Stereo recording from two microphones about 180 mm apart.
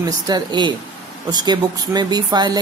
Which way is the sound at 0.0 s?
25° right (ahead or behind).